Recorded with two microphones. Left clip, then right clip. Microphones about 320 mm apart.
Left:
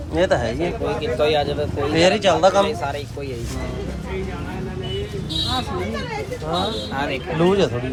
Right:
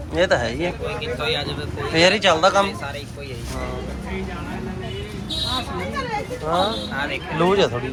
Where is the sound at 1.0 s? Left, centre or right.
Left.